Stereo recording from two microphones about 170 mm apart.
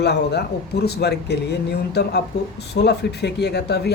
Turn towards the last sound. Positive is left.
turn(degrees=75)  # may be behind; listen again after turning